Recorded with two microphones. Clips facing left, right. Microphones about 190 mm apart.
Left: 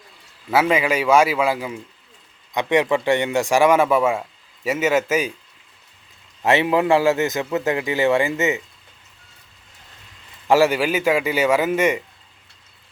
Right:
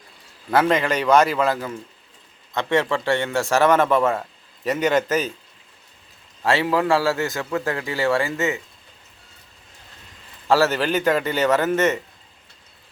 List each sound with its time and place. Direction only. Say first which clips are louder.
0.5 s a man's voice: left 1 dB; 10° left (ahead or behind)
6.4 s a man's voice: left 2 dB; 20° left (ahead or behind)
10.5 s a man's voice: left 2 dB; 15° left (ahead or behind)